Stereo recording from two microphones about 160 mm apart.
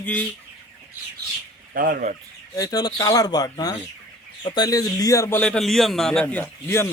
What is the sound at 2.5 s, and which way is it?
A man's voice, 25° left (ahead or behind).